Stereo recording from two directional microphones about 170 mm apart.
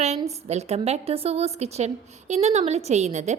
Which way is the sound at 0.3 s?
40° right (ahead or behind).